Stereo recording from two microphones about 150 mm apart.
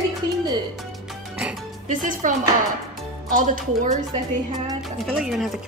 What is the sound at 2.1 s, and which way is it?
Speech, 60° right (ahead or behind).